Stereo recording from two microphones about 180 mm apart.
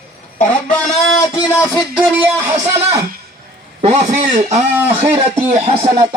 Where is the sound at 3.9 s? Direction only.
40° right (ahead or behind).